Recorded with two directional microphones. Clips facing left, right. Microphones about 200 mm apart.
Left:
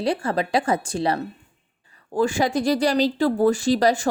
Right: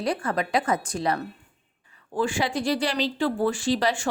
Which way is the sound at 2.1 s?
40° left (ahead or behind).